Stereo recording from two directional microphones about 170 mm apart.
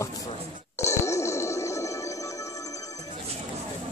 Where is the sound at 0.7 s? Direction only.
15° left (ahead or behind).